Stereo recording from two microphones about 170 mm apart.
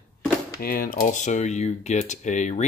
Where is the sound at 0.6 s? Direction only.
60° left (ahead or behind).